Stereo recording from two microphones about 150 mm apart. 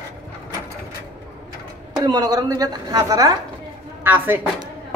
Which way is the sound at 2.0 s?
25° right (ahead or behind).